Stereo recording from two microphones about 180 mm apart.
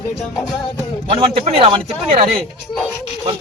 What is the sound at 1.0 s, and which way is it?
A man's voice, 30° right (ahead or behind).